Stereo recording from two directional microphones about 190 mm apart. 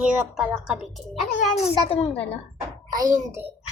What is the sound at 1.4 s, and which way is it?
Speech, 35° left (ahead or behind).